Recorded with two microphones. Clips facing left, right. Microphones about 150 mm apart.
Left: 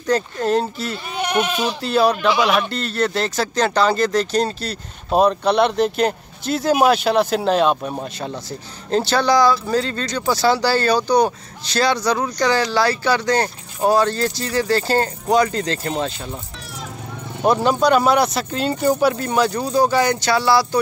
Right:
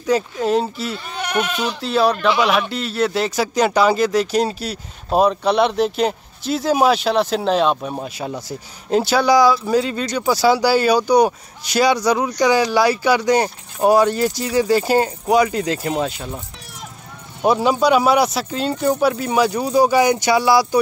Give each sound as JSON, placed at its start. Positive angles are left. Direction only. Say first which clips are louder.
{"t": 0.0, "sound": "speech", "louder": "right 1 dB", "side_deg": -5}
{"t": 1.1, "sound": "speech", "louder": "left 2 dB", "side_deg": 20}
{"t": 1.8, "sound": "speech", "louder": "even", "side_deg": 0}
{"t": 17.4, "sound": "speech", "louder": "even", "side_deg": -5}